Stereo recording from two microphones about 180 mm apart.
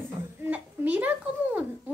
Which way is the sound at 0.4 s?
10° right (ahead or behind).